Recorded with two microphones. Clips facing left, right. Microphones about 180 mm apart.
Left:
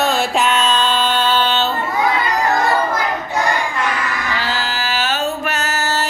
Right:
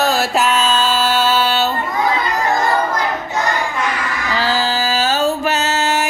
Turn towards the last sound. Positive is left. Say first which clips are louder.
# right 3 dB
turn(degrees=-15)  # may be behind; listen again after turning